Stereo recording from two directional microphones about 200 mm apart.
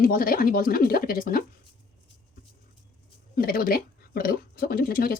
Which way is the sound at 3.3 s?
45° left (ahead or behind).